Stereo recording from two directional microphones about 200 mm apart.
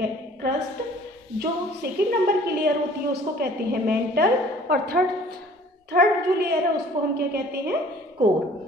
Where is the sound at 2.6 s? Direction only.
50° right (ahead or behind).